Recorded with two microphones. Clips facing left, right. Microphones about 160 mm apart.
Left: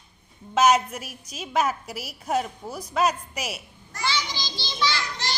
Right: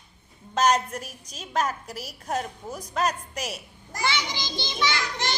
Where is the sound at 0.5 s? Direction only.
5° left (ahead or behind).